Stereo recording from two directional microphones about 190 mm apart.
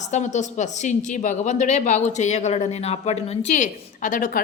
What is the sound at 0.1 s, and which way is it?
Speech, 40° left (ahead or behind).